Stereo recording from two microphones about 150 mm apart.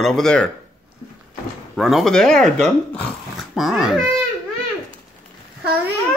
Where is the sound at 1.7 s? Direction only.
Centre (ahead or behind).